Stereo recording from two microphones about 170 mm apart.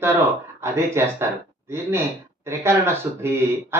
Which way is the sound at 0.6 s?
15° right (ahead or behind).